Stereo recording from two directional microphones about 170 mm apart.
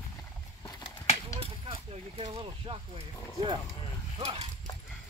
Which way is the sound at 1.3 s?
35° right (ahead or behind).